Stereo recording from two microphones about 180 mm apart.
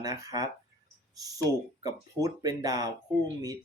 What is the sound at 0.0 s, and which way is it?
Speech, 20° right (ahead or behind).